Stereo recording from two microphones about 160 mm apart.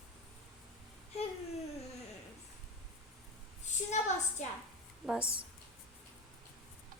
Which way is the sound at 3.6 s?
45° left (ahead or behind).